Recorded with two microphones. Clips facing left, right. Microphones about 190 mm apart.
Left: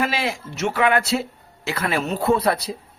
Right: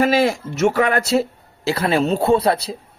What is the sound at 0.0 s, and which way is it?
Speech, 45° right (ahead or behind).